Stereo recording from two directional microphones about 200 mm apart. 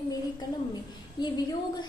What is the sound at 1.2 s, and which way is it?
Speech, 20° left (ahead or behind).